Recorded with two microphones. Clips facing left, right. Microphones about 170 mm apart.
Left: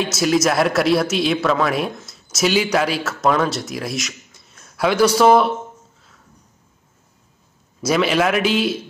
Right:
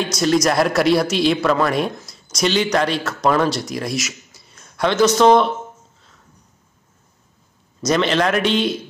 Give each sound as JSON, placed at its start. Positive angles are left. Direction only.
{"t": 0.0, "sound": "speech", "side_deg": 5}
{"t": 7.8, "sound": "speech", "side_deg": 5}